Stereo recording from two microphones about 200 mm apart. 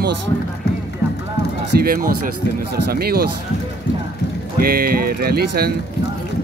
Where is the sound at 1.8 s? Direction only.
45° right (ahead or behind).